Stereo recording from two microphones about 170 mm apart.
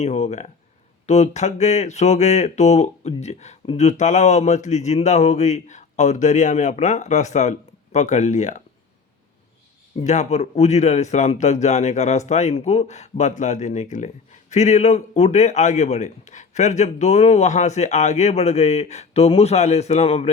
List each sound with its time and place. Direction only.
0.0 s speech: 40° left (ahead or behind)
10.0 s speech: 45° left (ahead or behind)